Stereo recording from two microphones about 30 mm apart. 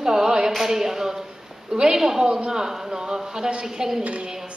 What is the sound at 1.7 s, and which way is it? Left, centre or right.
A woman's voice, right.